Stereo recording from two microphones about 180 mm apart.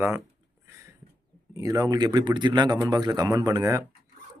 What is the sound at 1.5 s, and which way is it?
A man's voice, 20° right (ahead or behind).